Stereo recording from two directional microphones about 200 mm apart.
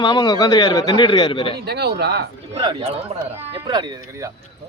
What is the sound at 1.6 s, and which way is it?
Speech, 55° right (ahead or behind).